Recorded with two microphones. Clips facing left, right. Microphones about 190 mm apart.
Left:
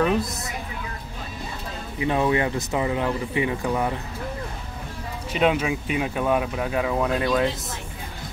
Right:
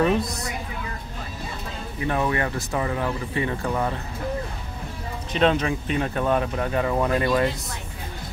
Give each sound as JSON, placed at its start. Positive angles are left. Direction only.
{"t": 0.0, "sound": "speech", "side_deg": 0}
{"t": 2.0, "sound": "speech", "side_deg": 15}
{"t": 5.3, "sound": "speech", "side_deg": 10}